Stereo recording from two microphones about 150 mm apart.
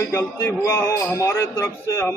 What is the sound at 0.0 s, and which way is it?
A man's voice, 15° left (ahead or behind).